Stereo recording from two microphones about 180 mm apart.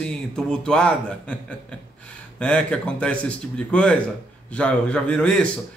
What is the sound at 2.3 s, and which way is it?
A man's voice, 5° left (ahead or behind).